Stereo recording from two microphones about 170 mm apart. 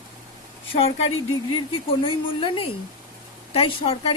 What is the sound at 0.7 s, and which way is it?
Speech, 35° left (ahead or behind).